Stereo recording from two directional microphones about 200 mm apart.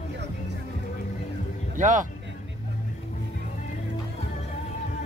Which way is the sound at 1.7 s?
40° right (ahead or behind).